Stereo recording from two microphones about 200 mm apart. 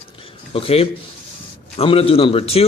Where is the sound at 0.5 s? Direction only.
30° left (ahead or behind).